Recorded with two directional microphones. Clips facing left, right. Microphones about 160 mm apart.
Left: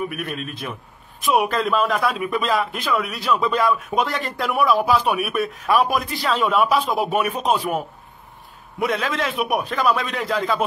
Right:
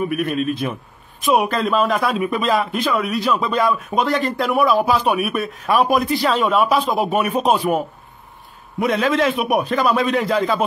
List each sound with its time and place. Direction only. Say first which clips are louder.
0.1 s a man's voice: right 9 dB; centre (ahead or behind)
6.4 s a man's voice: left 2 dB; 30° right (ahead or behind)
7.0 s a man's voice: right 3 dB; centre (ahead or behind)